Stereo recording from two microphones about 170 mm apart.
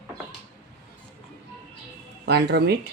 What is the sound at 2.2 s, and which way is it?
Speech, 75° right (ahead or behind).